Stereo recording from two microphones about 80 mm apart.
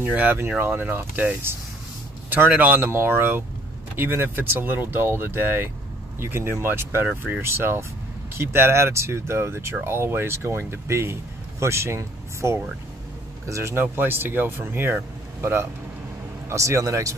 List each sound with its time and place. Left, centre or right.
0.0 s speech: right
7.1 s speech: centre
7.4 s speech: right